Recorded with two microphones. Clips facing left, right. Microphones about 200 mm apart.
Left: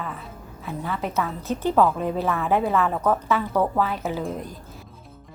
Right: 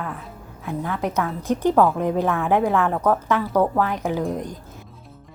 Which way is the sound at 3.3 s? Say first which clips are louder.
Right 2 dB; 15° right (ahead or behind).